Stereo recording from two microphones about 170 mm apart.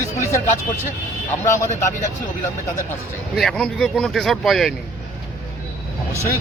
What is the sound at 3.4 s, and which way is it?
Speech, 5° left (ahead or behind).